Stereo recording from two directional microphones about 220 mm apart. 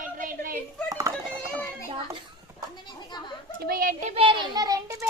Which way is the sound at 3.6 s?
40° right (ahead or behind).